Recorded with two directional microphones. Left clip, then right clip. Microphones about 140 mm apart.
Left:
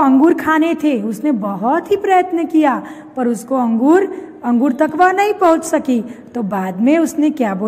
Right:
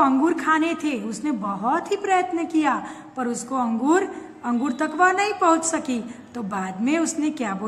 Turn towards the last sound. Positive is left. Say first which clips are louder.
# left 9 dB
turn(degrees=40)  # may be behind; listen again after turning